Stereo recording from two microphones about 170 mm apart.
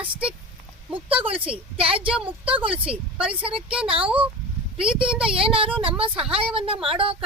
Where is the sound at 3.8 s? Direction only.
30° right (ahead or behind).